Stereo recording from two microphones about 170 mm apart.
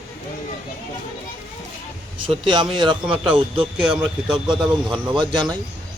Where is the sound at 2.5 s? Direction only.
30° right (ahead or behind).